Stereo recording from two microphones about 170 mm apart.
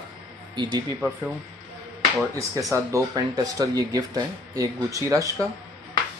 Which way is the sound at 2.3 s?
20° right (ahead or behind).